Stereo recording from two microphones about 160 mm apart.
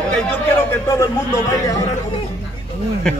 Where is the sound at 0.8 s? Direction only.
20° left (ahead or behind).